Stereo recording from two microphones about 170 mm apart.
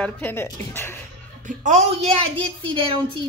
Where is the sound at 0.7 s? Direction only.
15° left (ahead or behind).